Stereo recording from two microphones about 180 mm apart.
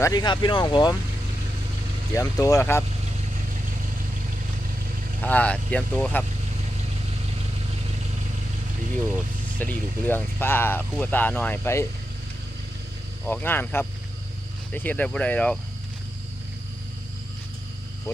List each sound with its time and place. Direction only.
0.0 s speech: 20° left (ahead or behind)
2.1 s speech: 15° left (ahead or behind)
5.2 s speech: 10° left (ahead or behind)
9.6 s speech: 10° left (ahead or behind)
13.2 s speech: 10° left (ahead or behind)